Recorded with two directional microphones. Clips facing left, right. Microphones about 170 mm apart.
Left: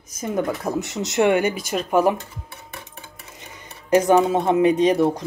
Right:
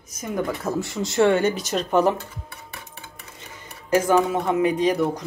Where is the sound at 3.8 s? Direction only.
20° left (ahead or behind).